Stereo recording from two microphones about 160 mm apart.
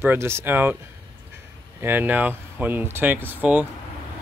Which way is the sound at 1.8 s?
10° right (ahead or behind).